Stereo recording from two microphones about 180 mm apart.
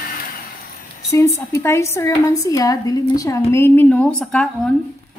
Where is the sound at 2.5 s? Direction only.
20° left (ahead or behind).